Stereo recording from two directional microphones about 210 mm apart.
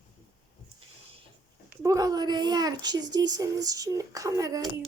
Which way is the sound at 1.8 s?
15° right (ahead or behind).